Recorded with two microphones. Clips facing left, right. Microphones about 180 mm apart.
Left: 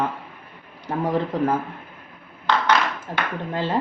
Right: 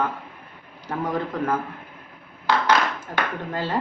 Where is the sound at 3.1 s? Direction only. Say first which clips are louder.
Right 1 dB; 30° left (ahead or behind).